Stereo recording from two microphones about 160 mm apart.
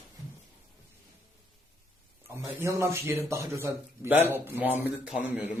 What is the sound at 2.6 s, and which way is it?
A man's voice, 15° right (ahead or behind).